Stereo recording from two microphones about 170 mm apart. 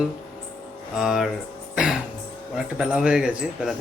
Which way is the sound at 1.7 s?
5° right (ahead or behind).